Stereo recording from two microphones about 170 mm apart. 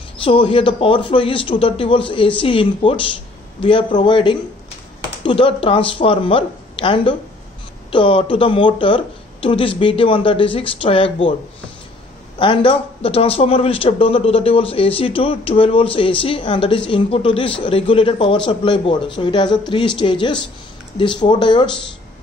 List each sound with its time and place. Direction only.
0.2 s a man's voice: 30° left (ahead or behind)
12.4 s a man's voice: 30° left (ahead or behind)